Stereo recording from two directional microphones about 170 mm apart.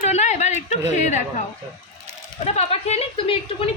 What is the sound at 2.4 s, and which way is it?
Speech, 35° left (ahead or behind).